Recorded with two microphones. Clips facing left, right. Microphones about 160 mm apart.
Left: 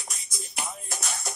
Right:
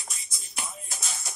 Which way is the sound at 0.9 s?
65° left (ahead or behind).